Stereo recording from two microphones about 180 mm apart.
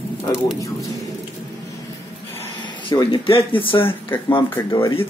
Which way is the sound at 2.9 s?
25° left (ahead or behind).